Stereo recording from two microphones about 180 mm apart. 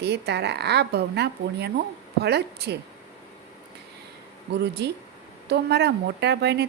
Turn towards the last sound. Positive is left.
turn(degrees=-70)  # may be behind; listen again after turning